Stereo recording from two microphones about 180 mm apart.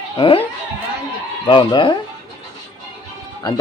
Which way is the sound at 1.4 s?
30° left (ahead or behind).